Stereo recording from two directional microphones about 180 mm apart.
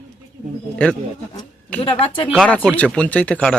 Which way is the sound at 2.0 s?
25° left (ahead or behind).